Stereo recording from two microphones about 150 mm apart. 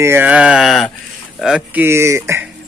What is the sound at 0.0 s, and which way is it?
A man's voice, 15° right (ahead or behind).